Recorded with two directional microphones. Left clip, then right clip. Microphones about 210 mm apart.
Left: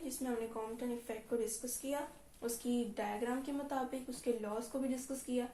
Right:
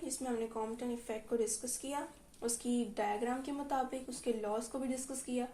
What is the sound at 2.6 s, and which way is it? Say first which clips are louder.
A woman's voice: right 3 dB; 45° right (ahead or behind).